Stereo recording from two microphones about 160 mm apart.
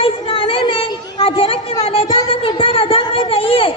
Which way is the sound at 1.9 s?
35° left (ahead or behind).